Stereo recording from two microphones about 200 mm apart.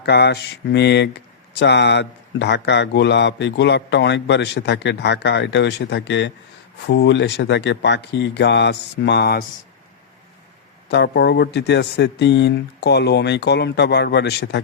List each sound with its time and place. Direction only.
0.0 s speech: 55° left (ahead or behind)
10.8 s speech: 55° left (ahead or behind)